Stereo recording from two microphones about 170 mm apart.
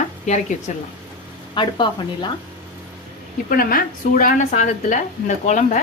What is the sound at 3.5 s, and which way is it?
A woman's voice, 60° left (ahead or behind).